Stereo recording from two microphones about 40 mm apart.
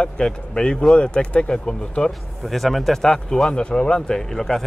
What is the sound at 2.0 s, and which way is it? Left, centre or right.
Speech, centre.